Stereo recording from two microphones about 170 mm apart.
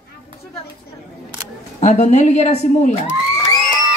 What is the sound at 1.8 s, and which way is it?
A woman's voice, 40° left (ahead or behind).